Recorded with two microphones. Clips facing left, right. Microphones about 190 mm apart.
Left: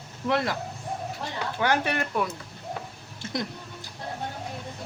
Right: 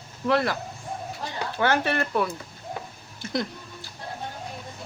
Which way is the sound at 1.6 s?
15° left (ahead or behind).